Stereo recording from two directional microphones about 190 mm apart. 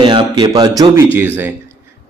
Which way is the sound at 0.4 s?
20° right (ahead or behind).